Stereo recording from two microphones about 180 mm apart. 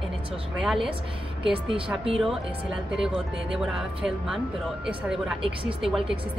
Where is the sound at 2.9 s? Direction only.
Centre (ahead or behind).